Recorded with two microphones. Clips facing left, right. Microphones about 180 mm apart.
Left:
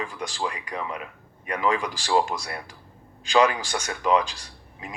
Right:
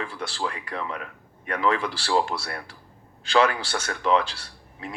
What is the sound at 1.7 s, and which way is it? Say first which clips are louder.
Speech: even; 10° left (ahead or behind).